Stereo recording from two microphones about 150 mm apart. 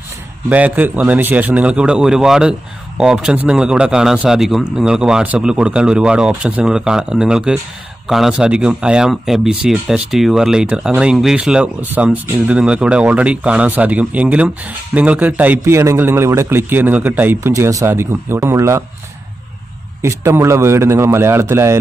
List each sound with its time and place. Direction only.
0.5 s speech: 10° right (ahead or behind)
20.0 s speech: 15° right (ahead or behind)